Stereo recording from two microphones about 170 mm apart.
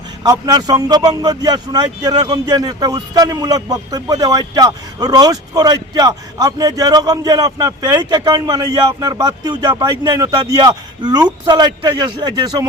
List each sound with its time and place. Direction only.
0.2 s a man's voice: 20° right (ahead or behind)